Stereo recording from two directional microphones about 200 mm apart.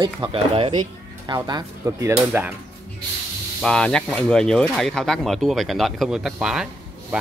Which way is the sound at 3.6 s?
5° left (ahead or behind).